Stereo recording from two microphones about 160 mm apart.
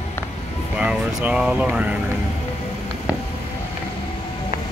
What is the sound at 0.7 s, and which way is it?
Vehicle, 5° right (ahead or behind).